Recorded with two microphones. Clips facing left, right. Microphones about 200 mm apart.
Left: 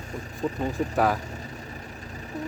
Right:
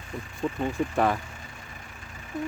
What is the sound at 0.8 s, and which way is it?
Speech, 35° left (ahead or behind).